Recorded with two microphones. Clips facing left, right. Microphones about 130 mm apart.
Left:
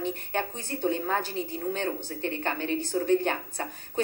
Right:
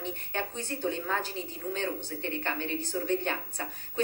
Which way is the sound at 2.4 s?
50° left (ahead or behind).